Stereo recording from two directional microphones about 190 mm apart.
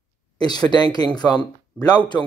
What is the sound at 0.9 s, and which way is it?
Speech, 20° left (ahead or behind).